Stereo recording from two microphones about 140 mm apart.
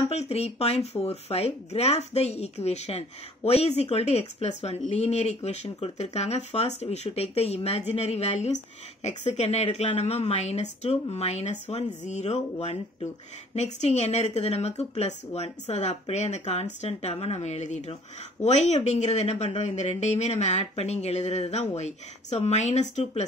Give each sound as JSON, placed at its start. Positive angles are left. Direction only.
{"t": 0.1, "sound": "speech", "side_deg": 50}